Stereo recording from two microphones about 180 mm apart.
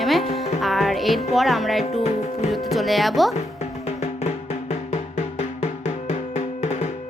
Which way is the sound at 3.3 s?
35° left (ahead or behind).